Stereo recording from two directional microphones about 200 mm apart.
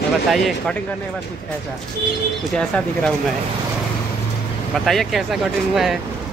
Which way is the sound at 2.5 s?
5° left (ahead or behind).